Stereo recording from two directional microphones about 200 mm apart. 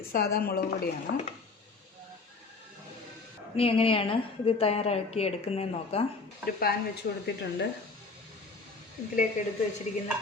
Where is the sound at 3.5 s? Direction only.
30° left (ahead or behind).